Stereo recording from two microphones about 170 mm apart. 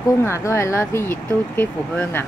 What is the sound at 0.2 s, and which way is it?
Speech, 15° left (ahead or behind).